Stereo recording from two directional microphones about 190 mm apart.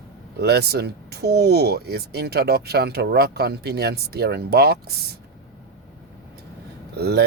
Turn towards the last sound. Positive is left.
turn(degrees=-60)  # may be behind; listen again after turning